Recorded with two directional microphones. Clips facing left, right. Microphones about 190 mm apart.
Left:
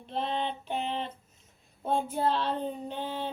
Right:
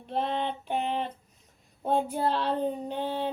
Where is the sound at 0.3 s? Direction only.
15° right (ahead or behind).